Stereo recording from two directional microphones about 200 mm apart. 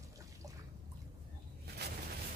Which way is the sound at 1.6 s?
55° right (ahead or behind).